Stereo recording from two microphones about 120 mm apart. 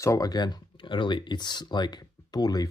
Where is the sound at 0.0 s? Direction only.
30° left (ahead or behind).